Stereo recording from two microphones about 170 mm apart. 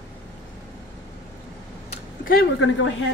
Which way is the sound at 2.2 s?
60° left (ahead or behind).